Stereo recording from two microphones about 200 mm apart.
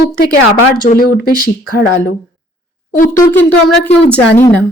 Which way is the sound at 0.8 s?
45° left (ahead or behind).